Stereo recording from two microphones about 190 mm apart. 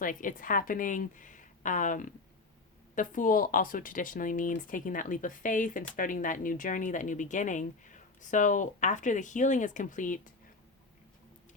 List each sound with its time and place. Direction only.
0.0 s speech: 45° left (ahead or behind)